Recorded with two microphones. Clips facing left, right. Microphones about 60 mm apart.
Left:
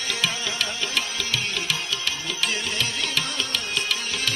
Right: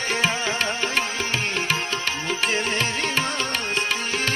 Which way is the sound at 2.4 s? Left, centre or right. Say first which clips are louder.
Right 3 dB; right.